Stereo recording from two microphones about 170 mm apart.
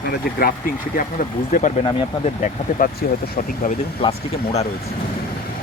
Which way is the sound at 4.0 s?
40° left (ahead or behind).